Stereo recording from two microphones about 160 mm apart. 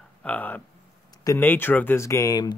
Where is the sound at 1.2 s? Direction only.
15° left (ahead or behind).